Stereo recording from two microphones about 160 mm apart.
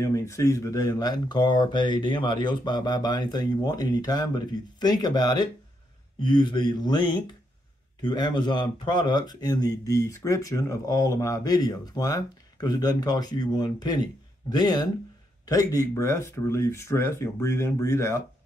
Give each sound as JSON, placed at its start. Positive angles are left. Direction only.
{"t": 0.0, "sound": "speech", "side_deg": 20}